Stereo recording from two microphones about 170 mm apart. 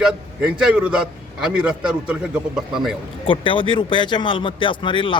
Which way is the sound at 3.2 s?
30° left (ahead or behind).